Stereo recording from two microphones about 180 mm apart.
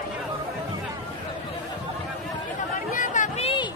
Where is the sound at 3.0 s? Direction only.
45° left (ahead or behind).